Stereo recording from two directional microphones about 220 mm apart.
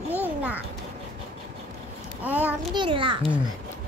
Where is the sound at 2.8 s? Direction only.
25° right (ahead or behind).